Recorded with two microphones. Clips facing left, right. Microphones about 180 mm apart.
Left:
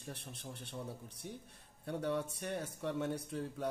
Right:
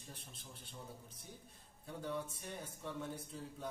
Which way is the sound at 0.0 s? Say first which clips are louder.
Left 8 dB; 70° left (ahead or behind).